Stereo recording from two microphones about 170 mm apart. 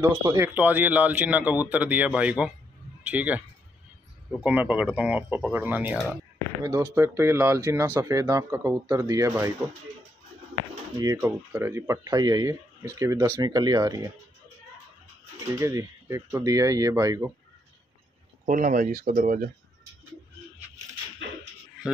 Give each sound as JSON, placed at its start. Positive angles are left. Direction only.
{"t": 0.0, "sound": "speech", "side_deg": -20}
{"t": 11.0, "sound": "speech", "side_deg": -15}
{"t": 15.4, "sound": "speech", "side_deg": -20}
{"t": 18.5, "sound": "speech", "side_deg": -50}